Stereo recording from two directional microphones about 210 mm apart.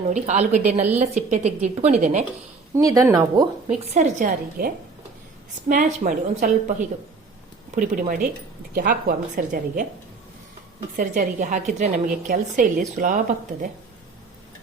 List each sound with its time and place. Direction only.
0.1 s a woman's voice: 35° right (ahead or behind)
2.7 s a woman's voice: 15° right (ahead or behind)
3.7 s a woman's voice: 35° right (ahead or behind)
10.9 s a woman's voice: 40° right (ahead or behind)